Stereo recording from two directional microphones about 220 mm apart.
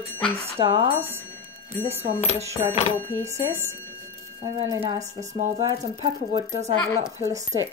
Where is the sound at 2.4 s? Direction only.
15° right (ahead or behind).